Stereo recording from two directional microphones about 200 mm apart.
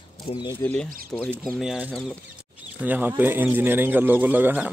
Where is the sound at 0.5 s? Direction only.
5° left (ahead or behind).